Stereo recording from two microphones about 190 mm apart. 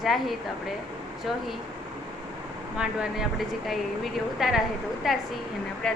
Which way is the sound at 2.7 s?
5° right (ahead or behind).